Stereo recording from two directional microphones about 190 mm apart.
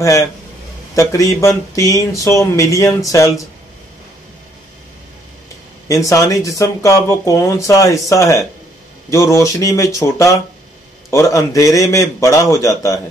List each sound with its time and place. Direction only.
0.9 s speech: 15° left (ahead or behind)
5.9 s speech: 15° left (ahead or behind)